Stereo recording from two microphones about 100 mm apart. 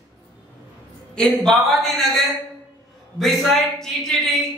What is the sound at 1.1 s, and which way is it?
Speech, 5° left (ahead or behind).